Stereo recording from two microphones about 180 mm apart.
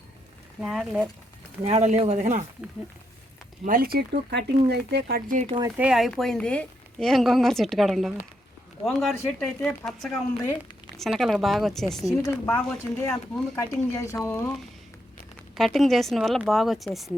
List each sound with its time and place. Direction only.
0.6 s speech: centre (ahead or behind)
1.6 s speech: 40° right (ahead or behind)
3.7 s speech: 55° right (ahead or behind)
5.7 s speech: 5° right (ahead or behind)
12.2 s speech: 15° left (ahead or behind)
15.5 s speech: centre (ahead or behind)